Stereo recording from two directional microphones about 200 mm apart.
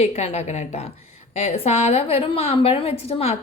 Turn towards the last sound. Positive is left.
turn(degrees=30)  # may be behind; listen again after turning